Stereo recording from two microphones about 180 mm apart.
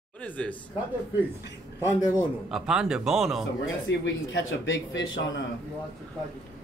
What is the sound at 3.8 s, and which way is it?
Speech, 90° left.